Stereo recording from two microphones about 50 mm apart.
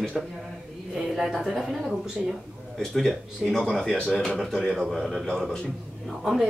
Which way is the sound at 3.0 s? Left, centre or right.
Centre.